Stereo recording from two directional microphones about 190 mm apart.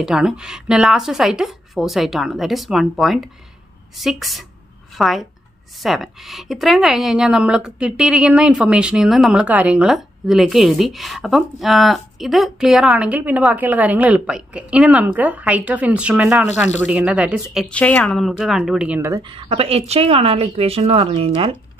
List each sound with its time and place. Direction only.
0.0 s a woman's voice: 5° right (ahead or behind)
17.6 s a woman's voice: 5° left (ahead or behind); by 19.2 s 15° right (ahead or behind)
19.2 s a woman's voice: 30° right (ahead or behind)